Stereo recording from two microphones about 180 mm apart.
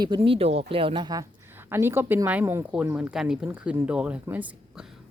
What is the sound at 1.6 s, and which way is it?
Speech, 15° right (ahead or behind).